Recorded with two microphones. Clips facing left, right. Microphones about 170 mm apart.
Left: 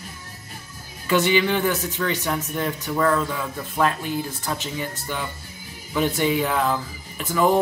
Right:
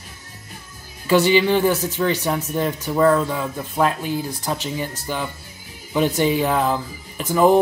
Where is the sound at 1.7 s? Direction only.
20° right (ahead or behind).